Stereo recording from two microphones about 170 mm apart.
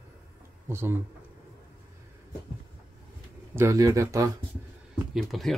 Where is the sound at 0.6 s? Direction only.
15° right (ahead or behind).